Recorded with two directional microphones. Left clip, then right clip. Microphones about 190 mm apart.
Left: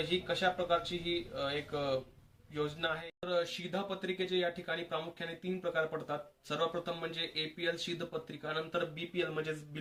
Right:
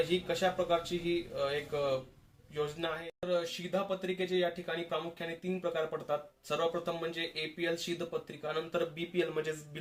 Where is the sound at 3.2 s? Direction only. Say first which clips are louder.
Right 2 dB; centre (ahead or behind).